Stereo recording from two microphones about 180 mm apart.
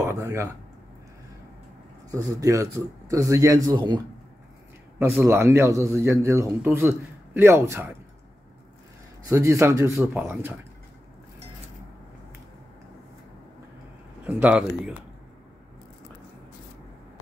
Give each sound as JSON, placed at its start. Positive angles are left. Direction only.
{"t": 0.0, "sound": "speech", "side_deg": -15}
{"t": 2.0, "sound": "a man's voice", "side_deg": -15}
{"t": 4.9, "sound": "a man's voice", "side_deg": -10}
{"t": 9.3, "sound": "a man's voice", "side_deg": -15}
{"t": 14.2, "sound": "a man's voice", "side_deg": -10}